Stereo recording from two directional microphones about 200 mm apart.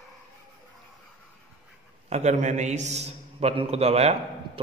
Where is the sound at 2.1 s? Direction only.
35° right (ahead or behind).